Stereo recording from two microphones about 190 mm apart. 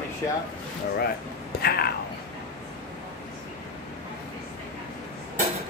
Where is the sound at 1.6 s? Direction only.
55° left (ahead or behind).